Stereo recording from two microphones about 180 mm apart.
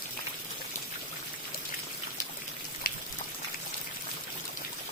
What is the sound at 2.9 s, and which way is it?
Boiling, 55° left (ahead or behind).